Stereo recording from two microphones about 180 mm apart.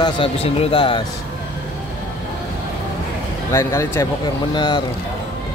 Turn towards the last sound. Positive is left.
turn(degrees=25)  # may be behind; listen again after turning